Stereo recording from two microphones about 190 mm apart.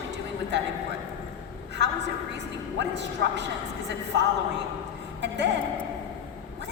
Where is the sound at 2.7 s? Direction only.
65° right (ahead or behind).